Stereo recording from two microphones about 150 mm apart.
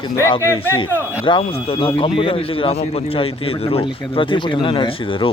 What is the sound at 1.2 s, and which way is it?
Speech, 35° left (ahead or behind).